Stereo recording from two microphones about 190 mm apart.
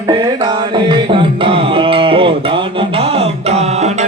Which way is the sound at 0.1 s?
20° right (ahead or behind).